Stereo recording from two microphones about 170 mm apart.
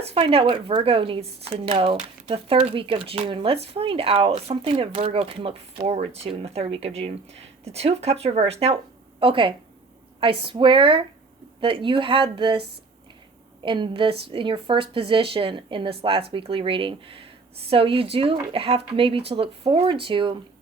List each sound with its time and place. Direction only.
0.0 s speech: 35° right (ahead or behind)